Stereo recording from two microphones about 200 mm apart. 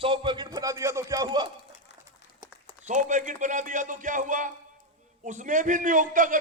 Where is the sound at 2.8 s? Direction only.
40° right (ahead or behind).